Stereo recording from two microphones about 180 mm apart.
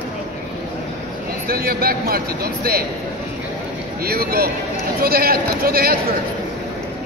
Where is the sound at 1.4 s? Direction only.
55° right (ahead or behind).